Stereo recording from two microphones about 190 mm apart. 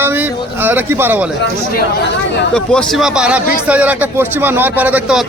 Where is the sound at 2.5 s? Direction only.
5° left (ahead or behind).